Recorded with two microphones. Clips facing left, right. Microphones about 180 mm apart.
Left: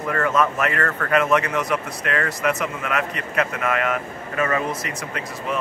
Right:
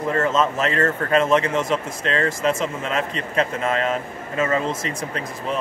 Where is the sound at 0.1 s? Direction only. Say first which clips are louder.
Even; 25° right (ahead or behind).